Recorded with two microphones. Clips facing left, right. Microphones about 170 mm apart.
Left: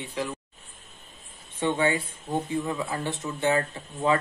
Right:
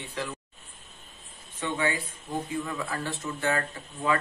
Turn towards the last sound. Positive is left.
turn(degrees=25)  # may be behind; listen again after turning